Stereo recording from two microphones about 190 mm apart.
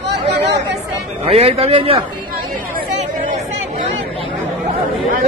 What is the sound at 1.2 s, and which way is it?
Speech, 30° right (ahead or behind).